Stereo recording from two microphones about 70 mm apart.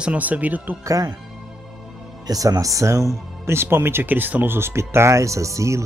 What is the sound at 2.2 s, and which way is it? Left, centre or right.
Speech, right.